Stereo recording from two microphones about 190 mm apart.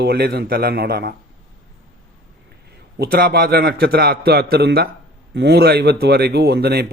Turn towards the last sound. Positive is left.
turn(degrees=-60)  # may be behind; listen again after turning